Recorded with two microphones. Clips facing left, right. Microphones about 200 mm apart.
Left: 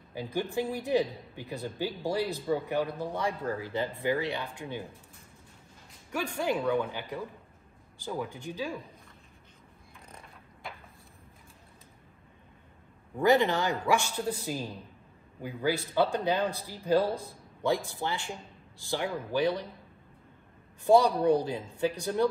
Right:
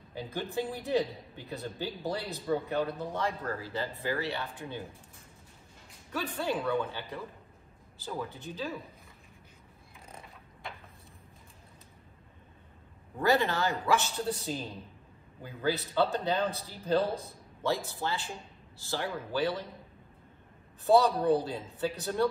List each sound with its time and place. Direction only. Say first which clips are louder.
0.1 s speech: left 3 dB; 15° left (ahead or behind)
6.1 s speech: left 2 dB; 10° left (ahead or behind)
13.2 s speech: left 3 dB; 15° left (ahead or behind)
20.8 s speech: left 2 dB; 15° left (ahead or behind)